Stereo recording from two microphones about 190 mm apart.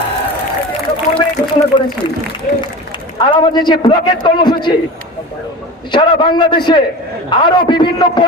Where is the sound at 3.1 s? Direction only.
20° left (ahead or behind).